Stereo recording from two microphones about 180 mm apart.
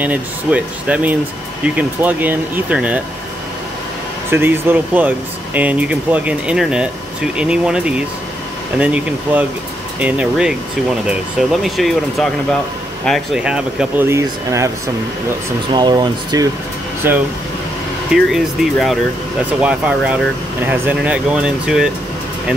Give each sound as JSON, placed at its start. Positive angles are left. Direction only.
{"t": 0.0, "sound": "speech", "side_deg": -10}
{"t": 4.3, "sound": "speech", "side_deg": -10}
{"t": 15.7, "sound": "speech", "side_deg": -25}
{"t": 17.0, "sound": "speech", "side_deg": -10}